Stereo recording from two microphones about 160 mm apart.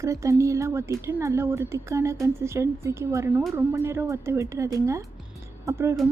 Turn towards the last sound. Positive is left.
turn(degrees=-20)  # may be behind; listen again after turning